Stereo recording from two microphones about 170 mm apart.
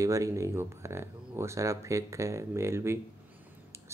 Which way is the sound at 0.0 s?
20° right (ahead or behind).